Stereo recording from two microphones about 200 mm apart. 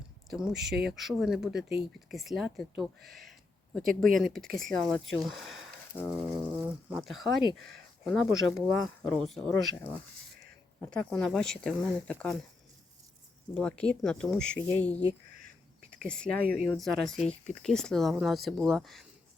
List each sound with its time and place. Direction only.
0.3 s speech: centre (ahead or behind)
13.5 s speech: 5° left (ahead or behind)
16.4 s speech: 50° right (ahead or behind)
16.6 s speech: centre (ahead or behind)